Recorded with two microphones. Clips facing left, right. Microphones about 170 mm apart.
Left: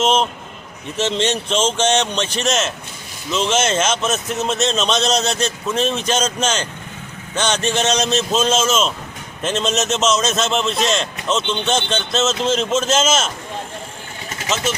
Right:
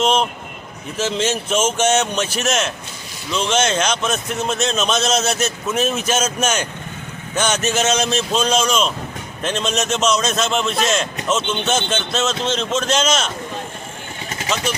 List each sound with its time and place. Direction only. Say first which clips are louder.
0.0 s a man's voice: even; centre (ahead or behind)